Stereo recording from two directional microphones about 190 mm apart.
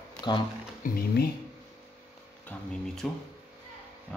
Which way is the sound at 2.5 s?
5° left (ahead or behind).